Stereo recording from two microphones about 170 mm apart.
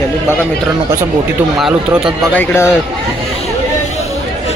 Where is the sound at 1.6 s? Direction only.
5° right (ahead or behind).